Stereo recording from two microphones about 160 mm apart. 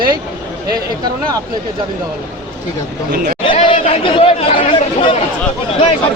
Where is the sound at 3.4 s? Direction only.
30° left (ahead or behind).